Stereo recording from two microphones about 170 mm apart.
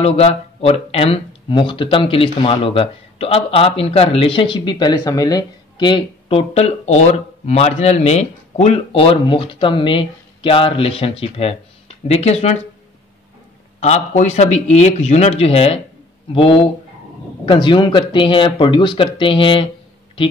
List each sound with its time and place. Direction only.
0.0 s speech: 35° left (ahead or behind)
13.7 s speech: 40° left (ahead or behind)